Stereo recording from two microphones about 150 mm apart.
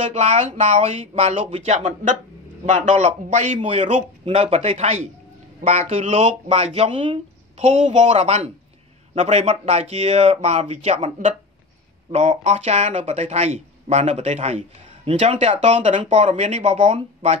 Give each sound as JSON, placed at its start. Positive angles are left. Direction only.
{"t": 0.0, "sound": "speech", "side_deg": -45}
{"t": 12.1, "sound": "speech", "side_deg": -50}